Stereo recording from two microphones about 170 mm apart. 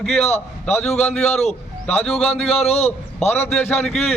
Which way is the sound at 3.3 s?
10° left (ahead or behind).